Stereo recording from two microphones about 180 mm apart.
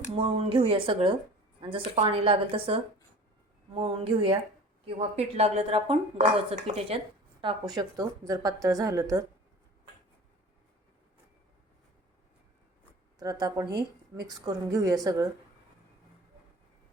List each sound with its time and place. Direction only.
0.2 s a woman's voice: 30° right (ahead or behind)
7.7 s a woman's voice: 20° right (ahead or behind)
13.1 s a woman's voice: 20° right (ahead or behind)